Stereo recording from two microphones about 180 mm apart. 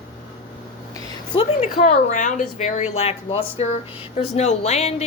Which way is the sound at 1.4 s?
40° left (ahead or behind).